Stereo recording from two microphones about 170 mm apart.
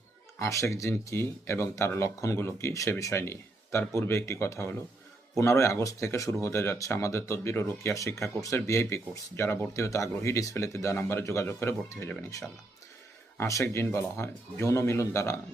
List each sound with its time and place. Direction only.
0.3 s speech: 20° left (ahead or behind)